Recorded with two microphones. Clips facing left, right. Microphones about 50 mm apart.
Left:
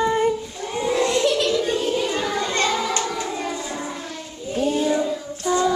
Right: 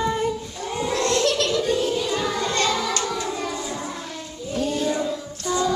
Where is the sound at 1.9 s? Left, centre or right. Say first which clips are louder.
Left 1 dB; left.